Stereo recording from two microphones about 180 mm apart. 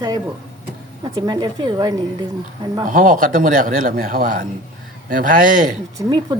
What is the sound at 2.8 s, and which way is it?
A man's voice, 50° right (ahead or behind).